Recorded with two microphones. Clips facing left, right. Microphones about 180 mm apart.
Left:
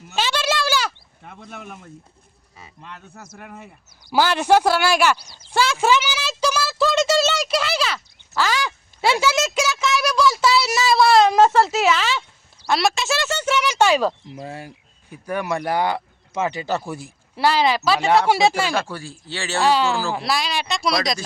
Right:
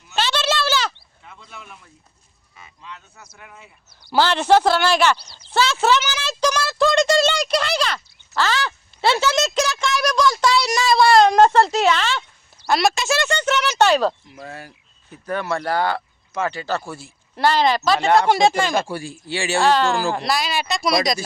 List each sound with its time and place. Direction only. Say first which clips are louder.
0.2 s a sound: right 1 dB; 10° left (ahead or behind)
1.2 s speech: left 5 dB; 55° left (ahead or behind)
4.1 s speech: right 1 dB; 10° left (ahead or behind)
14.3 s speech: left 3 dB; 25° left (ahead or behind)
15.1 s speech: even; 15° left (ahead or behind)
18.7 s speech: right 2 dB; 10° right (ahead or behind)
19.6 s speech: even; 5° left (ahead or behind)